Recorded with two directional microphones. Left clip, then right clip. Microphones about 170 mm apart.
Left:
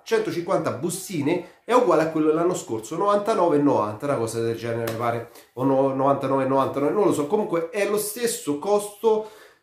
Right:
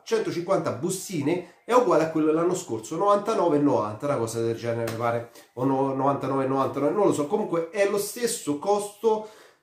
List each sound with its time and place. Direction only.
0.1 s speech: 20° left (ahead or behind)